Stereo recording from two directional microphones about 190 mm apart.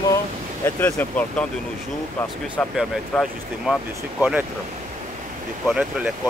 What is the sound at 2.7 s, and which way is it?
Speech, centre (ahead or behind).